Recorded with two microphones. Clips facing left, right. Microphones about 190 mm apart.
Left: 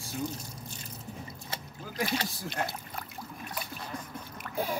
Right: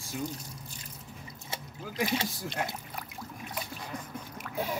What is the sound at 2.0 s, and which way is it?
Speech, 20° right (ahead or behind).